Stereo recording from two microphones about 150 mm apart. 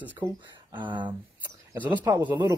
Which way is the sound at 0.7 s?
30° right (ahead or behind).